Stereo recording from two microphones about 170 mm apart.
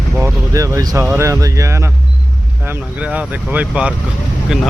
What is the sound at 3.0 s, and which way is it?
Speech, 10° right (ahead or behind).